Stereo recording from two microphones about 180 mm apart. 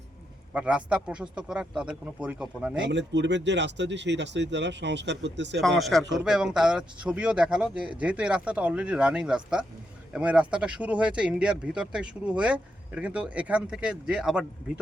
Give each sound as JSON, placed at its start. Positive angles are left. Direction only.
{"t": 0.5, "sound": "speech", "side_deg": -5}
{"t": 2.8, "sound": "speech", "side_deg": -80}
{"t": 5.5, "sound": "a man's voice", "side_deg": 0}